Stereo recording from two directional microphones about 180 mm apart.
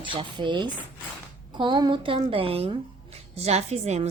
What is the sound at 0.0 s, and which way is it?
A woman's voice, 25° right (ahead or behind).